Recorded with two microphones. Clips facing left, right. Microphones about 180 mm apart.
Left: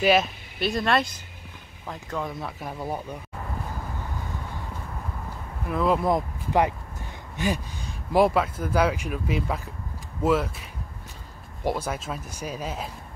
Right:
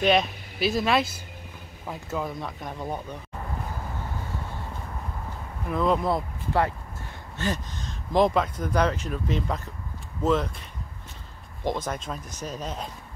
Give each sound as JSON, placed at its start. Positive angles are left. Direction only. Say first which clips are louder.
{"t": 0.0, "sound": "speech", "louder": "left 1 dB", "side_deg": 5}
{"t": 5.7, "sound": "speech", "louder": "even", "side_deg": 5}
{"t": 6.0, "sound": "speech", "louder": "left 2 dB", "side_deg": 15}